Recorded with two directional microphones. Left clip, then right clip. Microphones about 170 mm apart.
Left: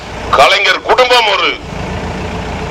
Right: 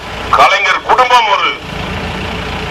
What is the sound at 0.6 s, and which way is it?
Speech, 25° left (ahead or behind).